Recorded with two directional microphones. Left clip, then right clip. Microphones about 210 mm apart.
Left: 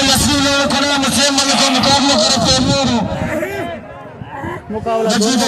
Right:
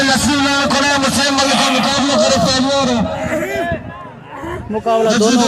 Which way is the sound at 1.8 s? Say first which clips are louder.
Left 1 dB; 30° left (ahead or behind).